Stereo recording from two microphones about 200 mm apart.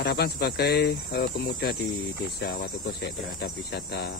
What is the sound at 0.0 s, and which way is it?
Speech, 55° left (ahead or behind).